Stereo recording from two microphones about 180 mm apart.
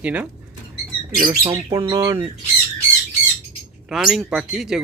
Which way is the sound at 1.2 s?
20° right (ahead or behind).